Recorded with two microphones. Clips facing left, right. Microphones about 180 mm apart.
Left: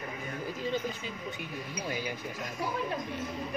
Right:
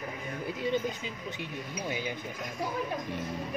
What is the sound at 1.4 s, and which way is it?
Speech, 20° right (ahead or behind).